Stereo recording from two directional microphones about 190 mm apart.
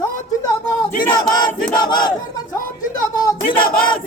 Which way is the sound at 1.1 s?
20° left (ahead or behind).